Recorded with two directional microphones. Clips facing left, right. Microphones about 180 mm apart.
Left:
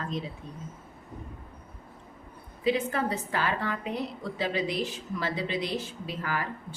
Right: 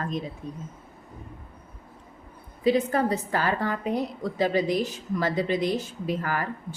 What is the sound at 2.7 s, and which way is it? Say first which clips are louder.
A woman's voice: right 5 dB; 40° right (ahead or behind).